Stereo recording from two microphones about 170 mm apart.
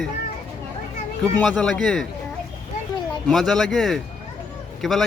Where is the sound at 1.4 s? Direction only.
Centre (ahead or behind).